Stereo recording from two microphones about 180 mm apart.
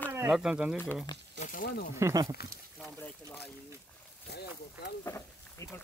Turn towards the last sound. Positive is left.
turn(degrees=15)  # may be behind; listen again after turning